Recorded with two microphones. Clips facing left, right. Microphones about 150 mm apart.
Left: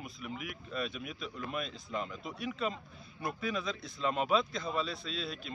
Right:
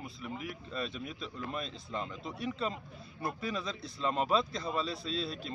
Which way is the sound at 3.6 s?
30° right (ahead or behind).